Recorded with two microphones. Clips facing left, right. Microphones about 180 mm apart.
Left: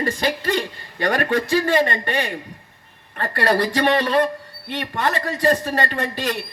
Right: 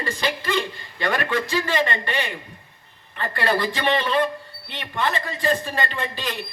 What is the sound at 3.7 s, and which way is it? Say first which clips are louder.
Speech: left 4 dB; 60° left (ahead or behind).